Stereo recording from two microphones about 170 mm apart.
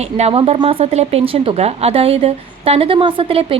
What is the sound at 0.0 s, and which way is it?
A woman's voice, 35° right (ahead or behind).